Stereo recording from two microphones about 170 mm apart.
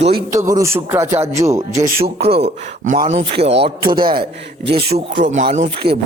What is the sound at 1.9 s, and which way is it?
Speech, 70° right (ahead or behind).